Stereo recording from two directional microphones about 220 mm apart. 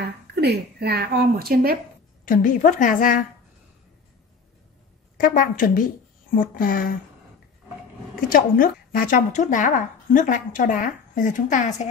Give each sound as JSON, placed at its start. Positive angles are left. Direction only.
{"t": 0.4, "sound": "a woman's voice", "side_deg": -45}
{"t": 2.2, "sound": "a woman's voice", "side_deg": 40}
{"t": 5.1, "sound": "a woman's voice", "side_deg": 40}
{"t": 8.3, "sound": "a woman's voice", "side_deg": 40}